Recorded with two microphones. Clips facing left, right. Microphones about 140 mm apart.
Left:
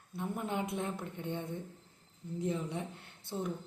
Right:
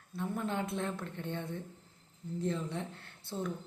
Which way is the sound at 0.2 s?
15° left (ahead or behind).